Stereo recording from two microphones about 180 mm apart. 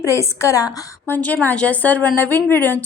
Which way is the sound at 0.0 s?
15° left (ahead or behind).